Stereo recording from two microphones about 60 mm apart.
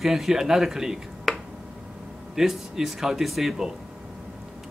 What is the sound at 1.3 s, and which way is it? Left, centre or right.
Finger snapping, centre.